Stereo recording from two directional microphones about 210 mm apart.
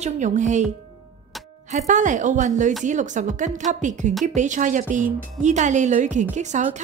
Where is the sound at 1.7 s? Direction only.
35° right (ahead or behind).